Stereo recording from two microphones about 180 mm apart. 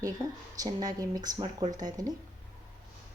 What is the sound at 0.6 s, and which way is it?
Speech, 20° right (ahead or behind).